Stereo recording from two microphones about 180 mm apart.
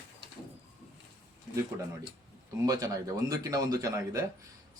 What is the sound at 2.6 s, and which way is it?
Speech, 20° right (ahead or behind).